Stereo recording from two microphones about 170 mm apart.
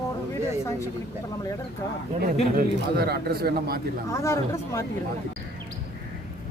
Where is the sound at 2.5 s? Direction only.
65° right (ahead or behind).